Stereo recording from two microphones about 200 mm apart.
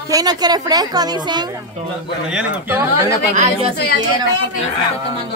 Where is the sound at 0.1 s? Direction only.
20° right (ahead or behind).